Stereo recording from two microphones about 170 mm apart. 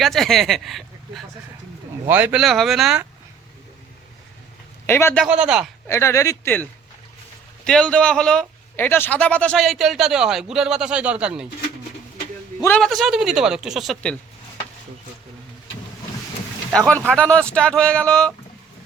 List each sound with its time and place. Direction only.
0.0 s speech: centre (ahead or behind)
2.0 s a man's voice: 10° right (ahead or behind)
4.9 s speech: 15° left (ahead or behind)
5.2 s a man's voice: 5° right (ahead or behind)
5.9 s a man's voice: 15° left (ahead or behind); by 11.4 s 5° right (ahead or behind)
12.6 s a man's voice: 5° left (ahead or behind)
16.7 s a man's voice: 5° left (ahead or behind)